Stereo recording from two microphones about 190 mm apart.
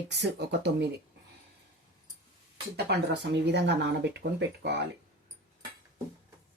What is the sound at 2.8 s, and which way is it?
Speech, 65° right (ahead or behind).